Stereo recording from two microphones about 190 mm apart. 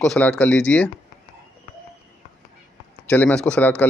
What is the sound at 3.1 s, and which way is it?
Speech, 5° left (ahead or behind).